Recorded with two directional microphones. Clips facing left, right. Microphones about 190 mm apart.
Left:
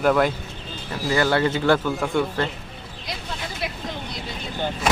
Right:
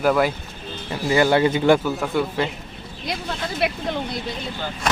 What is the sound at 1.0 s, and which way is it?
Speech, 20° right (ahead or behind).